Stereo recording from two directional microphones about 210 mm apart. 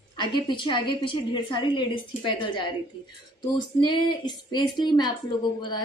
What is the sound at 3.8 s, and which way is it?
A woman's voice, 20° left (ahead or behind).